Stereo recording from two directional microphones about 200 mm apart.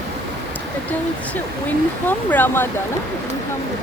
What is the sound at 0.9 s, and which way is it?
Speech, 5° left (ahead or behind).